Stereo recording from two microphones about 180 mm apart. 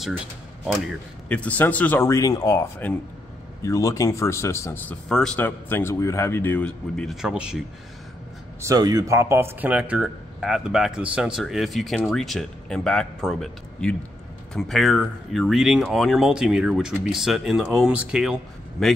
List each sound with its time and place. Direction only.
0.0 s speech: centre (ahead or behind); by 4.9 s 15° left (ahead or behind)
5.0 s speech: 5° left (ahead or behind)
8.5 s speech: 20° right (ahead or behind); by 18.9 s centre (ahead or behind)